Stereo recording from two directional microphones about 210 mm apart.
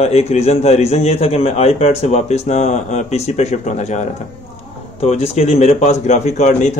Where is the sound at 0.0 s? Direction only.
30° left (ahead or behind).